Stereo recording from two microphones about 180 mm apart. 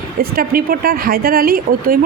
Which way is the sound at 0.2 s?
55° right (ahead or behind).